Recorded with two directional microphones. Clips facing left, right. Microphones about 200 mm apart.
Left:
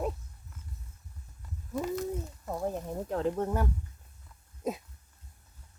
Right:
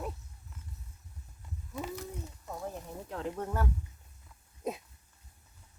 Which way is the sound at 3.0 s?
35° left (ahead or behind).